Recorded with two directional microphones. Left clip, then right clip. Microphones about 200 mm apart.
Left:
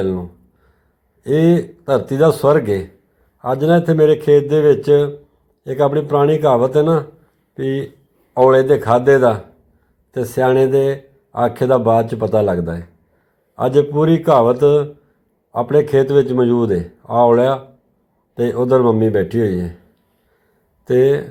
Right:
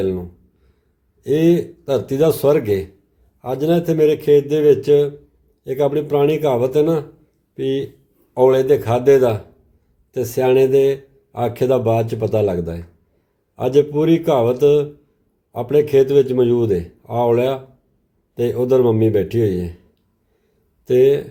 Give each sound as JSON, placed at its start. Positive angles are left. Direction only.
{"t": 0.0, "sound": "a man's voice", "side_deg": 5}
{"t": 20.8, "sound": "speech", "side_deg": 5}